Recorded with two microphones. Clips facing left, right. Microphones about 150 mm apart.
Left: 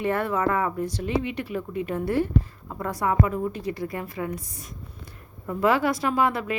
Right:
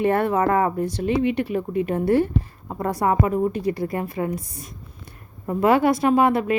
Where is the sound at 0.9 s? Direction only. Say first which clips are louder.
Right 6 dB; 30° right (ahead or behind).